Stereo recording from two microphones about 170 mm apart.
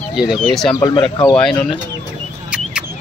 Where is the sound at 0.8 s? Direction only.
25° left (ahead or behind).